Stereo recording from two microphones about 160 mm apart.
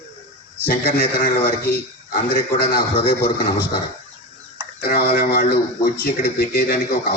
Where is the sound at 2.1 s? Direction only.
65° left (ahead or behind).